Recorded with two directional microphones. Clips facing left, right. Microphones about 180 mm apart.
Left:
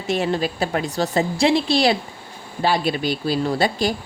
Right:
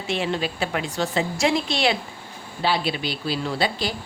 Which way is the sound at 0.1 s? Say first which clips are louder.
Left 4 dB; 40° left (ahead or behind).